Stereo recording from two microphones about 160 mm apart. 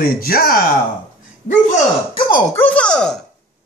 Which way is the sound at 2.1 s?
30° left (ahead or behind).